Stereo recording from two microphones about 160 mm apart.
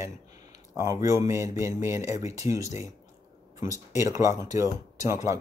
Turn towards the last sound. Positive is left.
turn(degrees=-20)  # may be behind; listen again after turning